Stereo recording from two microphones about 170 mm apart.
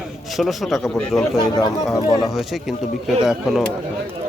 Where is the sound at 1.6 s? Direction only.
25° left (ahead or behind).